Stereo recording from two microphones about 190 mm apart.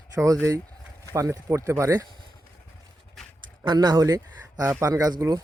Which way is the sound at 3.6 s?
25° right (ahead or behind).